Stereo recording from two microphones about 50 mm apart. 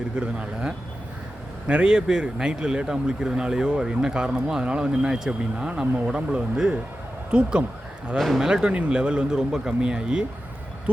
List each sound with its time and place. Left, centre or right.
0.2 s speech: right
8.2 s speech: centre
8.4 s speech: centre
8.7 s speech: right